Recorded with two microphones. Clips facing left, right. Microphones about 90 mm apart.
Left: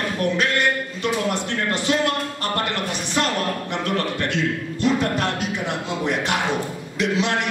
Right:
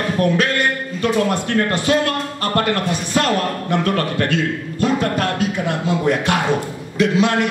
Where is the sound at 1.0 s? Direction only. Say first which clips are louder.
Right 7 dB; 50° right (ahead or behind).